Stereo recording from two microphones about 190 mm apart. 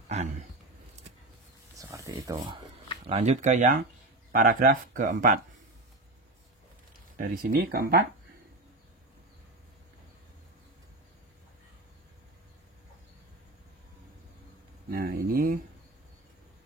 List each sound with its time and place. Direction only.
1.8 s a sound: 15° right (ahead or behind)
3.1 s speech: 35° right (ahead or behind)
7.2 s speech: 45° right (ahead or behind)
14.9 s speech: 50° right (ahead or behind)